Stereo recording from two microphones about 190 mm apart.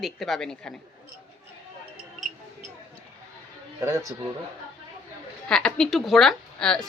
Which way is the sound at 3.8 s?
15° right (ahead or behind).